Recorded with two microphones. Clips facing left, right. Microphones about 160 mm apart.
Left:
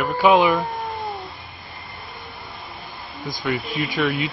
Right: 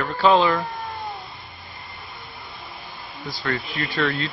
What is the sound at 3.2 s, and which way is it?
Speech, 15° left (ahead or behind).